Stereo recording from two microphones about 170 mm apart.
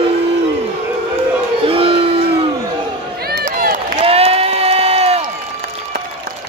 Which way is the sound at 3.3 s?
60° right (ahead or behind).